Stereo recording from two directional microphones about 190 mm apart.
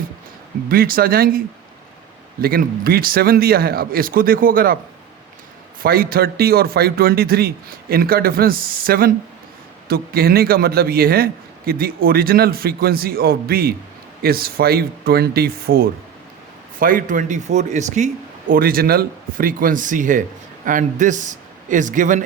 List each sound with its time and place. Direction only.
0.7 s a man's voice: 50° right (ahead or behind)
2.4 s a man's voice: 50° right (ahead or behind)
5.8 s a man's voice: 50° right (ahead or behind)